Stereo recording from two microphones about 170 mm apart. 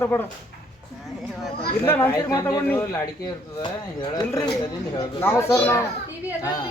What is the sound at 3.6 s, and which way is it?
Speech, 25° left (ahead or behind).